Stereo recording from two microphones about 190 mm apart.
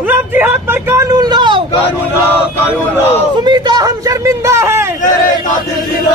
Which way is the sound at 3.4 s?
20° right (ahead or behind).